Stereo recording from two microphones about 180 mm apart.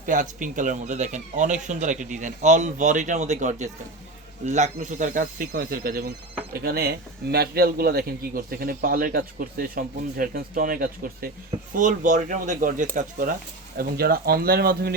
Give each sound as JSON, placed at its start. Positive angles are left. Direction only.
{"t": 0.0, "sound": "a man's voice", "side_deg": -45}